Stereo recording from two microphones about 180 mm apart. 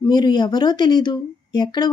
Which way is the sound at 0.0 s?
25° left (ahead or behind).